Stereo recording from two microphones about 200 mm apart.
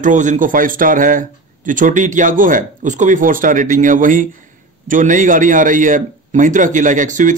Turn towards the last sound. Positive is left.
turn(degrees=-40)  # may be behind; listen again after turning